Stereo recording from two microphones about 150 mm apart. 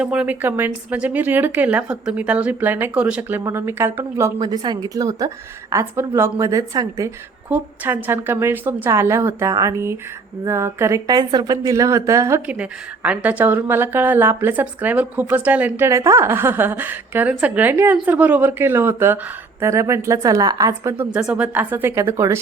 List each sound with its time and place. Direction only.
0.0 s a woman's voice: 5° right (ahead or behind)
4.4 s a woman's voice: 25° right (ahead or behind)
12.5 s a woman's voice: 10° right (ahead or behind)